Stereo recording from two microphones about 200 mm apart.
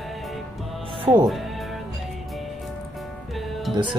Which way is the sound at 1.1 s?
30° right (ahead or behind).